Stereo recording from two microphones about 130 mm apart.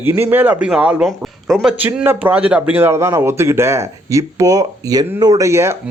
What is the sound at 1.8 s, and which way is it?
Speech, 15° right (ahead or behind).